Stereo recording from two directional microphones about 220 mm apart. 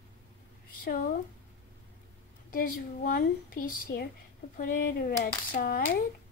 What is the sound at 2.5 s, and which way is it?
A woman's voice, 40° left (ahead or behind).